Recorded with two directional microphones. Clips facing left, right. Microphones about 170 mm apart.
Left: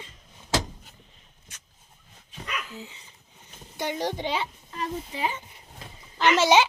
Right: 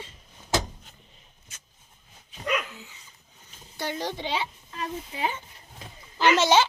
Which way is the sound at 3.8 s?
15° left (ahead or behind).